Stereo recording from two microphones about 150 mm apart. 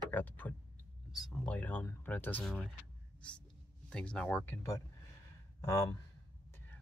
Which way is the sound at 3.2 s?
5° left (ahead or behind).